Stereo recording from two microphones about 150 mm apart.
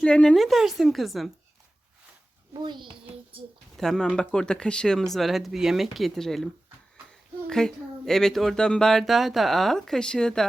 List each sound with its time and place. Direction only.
0.0 s speech: 5° left (ahead or behind)
2.5 s a child's voice: 30° right (ahead or behind)
3.8 s speech: 5° left (ahead or behind)